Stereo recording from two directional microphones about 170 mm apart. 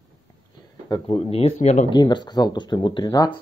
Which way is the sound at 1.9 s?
25° left (ahead or behind).